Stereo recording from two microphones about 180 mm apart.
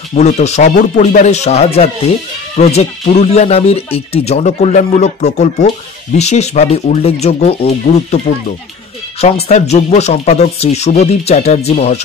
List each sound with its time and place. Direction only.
0.1 s speech: 40° left (ahead or behind)